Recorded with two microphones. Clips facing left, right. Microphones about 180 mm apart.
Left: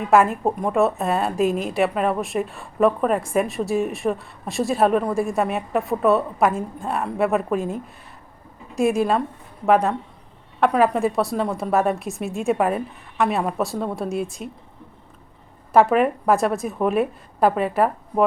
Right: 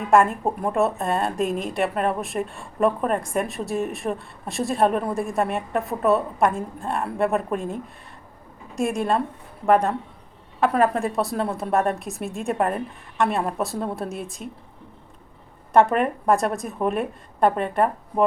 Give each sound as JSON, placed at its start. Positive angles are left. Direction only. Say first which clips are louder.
{"t": 0.1, "sound": "a woman's voice", "louder": "left 1 dB", "side_deg": 0}
{"t": 15.7, "sound": "a woman's voice", "louder": "left 2 dB", "side_deg": 0}